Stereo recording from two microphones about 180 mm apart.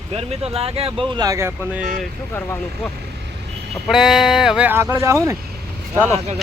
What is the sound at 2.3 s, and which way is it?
Speech, 15° left (ahead or behind).